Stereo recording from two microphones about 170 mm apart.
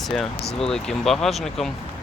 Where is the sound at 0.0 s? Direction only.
Centre (ahead or behind).